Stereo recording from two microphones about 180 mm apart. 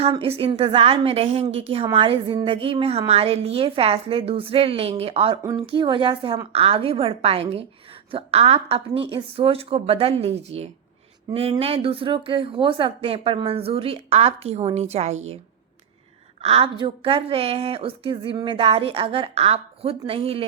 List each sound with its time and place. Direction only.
0.0 s a woman's voice: 30° right (ahead or behind)
16.4 s a woman's voice: 35° right (ahead or behind)